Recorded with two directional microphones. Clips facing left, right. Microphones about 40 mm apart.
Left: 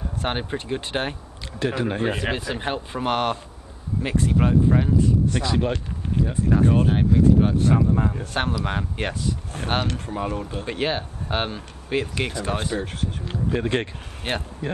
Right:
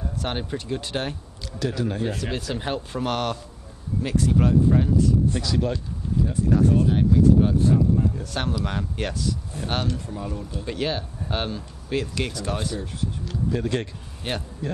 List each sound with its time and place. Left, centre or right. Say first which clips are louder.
0.2 s speech: left 3 dB; left
2.3 s speech: left 1 dB; left
6.7 s speech: left 1 dB; left
7.0 s speech: right 1 dB; left
7.5 s speech: even; left
9.5 s speech: left 4 dB; left